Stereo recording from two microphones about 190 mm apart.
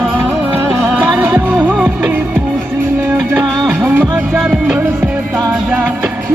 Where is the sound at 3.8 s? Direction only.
10° right (ahead or behind).